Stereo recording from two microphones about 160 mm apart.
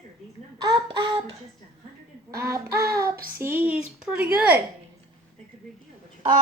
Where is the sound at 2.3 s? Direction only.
20° right (ahead or behind).